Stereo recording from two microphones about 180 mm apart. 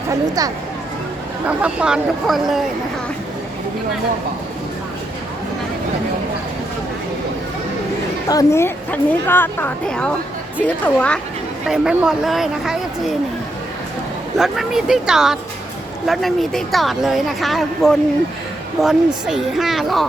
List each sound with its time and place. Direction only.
0.1 s speech: 20° right (ahead or behind)
1.5 s speech: 5° right (ahead or behind)
8.3 s a woman's voice: 15° left (ahead or behind)
11.7 s speech: 5° right (ahead or behind)
14.3 s speech: centre (ahead or behind)